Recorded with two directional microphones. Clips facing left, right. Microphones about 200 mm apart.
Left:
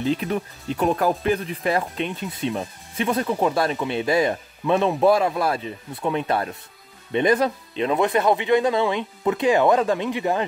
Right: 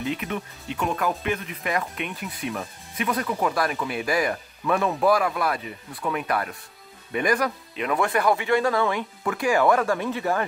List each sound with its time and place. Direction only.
0.0 s speech: 30° left (ahead or behind)